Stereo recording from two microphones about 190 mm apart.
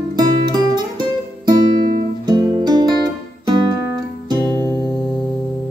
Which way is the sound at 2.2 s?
20° right (ahead or behind).